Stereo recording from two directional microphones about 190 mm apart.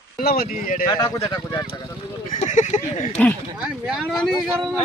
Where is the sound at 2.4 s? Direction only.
40° left (ahead or behind).